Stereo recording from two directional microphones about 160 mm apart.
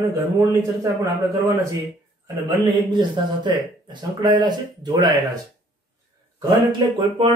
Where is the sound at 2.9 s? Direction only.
30° right (ahead or behind).